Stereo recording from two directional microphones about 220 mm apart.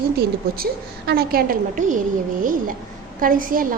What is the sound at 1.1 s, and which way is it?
Speech, 45° right (ahead or behind).